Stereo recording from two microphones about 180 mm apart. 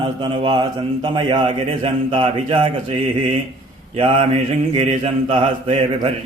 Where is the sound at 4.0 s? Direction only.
30° right (ahead or behind).